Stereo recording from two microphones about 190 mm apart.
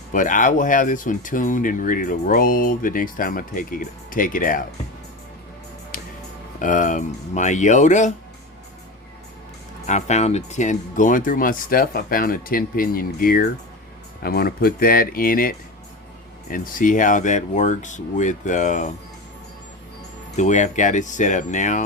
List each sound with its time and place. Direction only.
0.1 s speech: 45° left (ahead or behind)
6.6 s speech: 45° left (ahead or behind)
9.8 s speech: 35° left (ahead or behind)
20.3 s speech: 40° left (ahead or behind)